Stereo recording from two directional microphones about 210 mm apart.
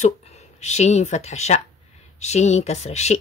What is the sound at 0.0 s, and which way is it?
Speech, 30° left (ahead or behind).